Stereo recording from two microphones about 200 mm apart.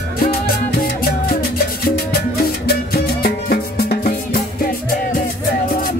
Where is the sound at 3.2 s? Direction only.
50° left (ahead or behind).